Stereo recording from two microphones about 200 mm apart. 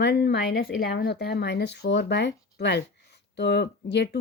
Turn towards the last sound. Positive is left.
turn(degrees=60)  # may be behind; listen again after turning